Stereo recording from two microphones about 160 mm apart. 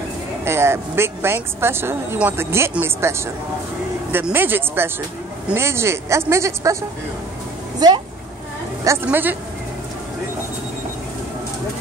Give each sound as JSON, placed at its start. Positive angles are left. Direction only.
{"t": 0.5, "sound": "speech", "side_deg": -15}
{"t": 7.8, "sound": "speech", "side_deg": -25}
{"t": 8.8, "sound": "speech", "side_deg": -15}